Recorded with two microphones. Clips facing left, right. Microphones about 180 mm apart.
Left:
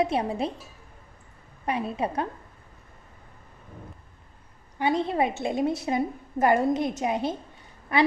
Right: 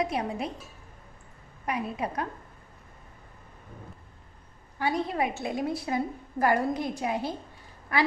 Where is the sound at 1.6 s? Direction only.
25° left (ahead or behind).